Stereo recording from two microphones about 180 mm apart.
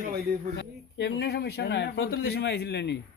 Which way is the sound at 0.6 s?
80° left.